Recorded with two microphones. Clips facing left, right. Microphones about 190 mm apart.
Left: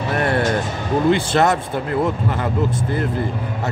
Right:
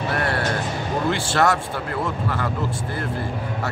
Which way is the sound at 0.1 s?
20° left (ahead or behind).